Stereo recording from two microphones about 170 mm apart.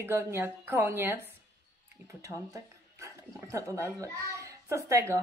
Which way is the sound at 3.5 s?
20° right (ahead or behind).